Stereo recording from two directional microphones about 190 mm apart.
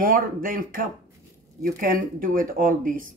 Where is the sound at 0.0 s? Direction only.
45° right (ahead or behind).